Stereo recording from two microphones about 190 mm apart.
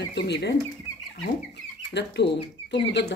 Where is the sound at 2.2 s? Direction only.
65° left (ahead or behind).